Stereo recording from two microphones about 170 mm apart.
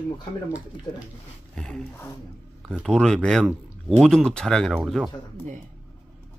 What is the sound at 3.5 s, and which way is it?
Speech, 10° right (ahead or behind).